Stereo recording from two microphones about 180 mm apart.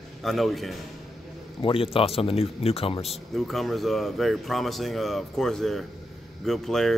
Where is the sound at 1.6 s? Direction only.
30° left (ahead or behind).